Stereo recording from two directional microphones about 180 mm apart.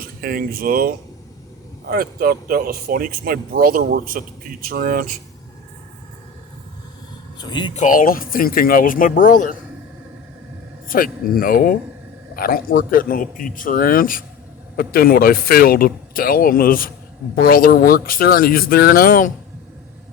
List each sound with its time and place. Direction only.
0.0 s speech: 55° right (ahead or behind)
7.3 s speech: 25° left (ahead or behind)
7.7 s speech: 45° left (ahead or behind)
10.8 s speech: 50° left (ahead or behind)